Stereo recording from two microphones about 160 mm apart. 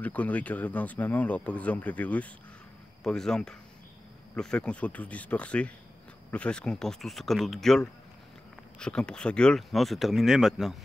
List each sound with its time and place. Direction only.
0.0 s speech: 10° left (ahead or behind)